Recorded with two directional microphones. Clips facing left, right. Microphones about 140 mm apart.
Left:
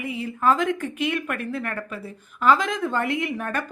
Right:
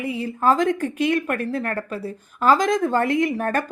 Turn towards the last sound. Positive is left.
turn(degrees=-40)  # may be behind; listen again after turning